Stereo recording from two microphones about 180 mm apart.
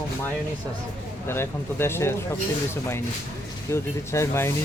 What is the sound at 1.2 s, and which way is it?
Speech, 15° left (ahead or behind).